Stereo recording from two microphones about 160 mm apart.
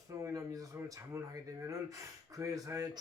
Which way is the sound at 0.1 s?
20° right (ahead or behind).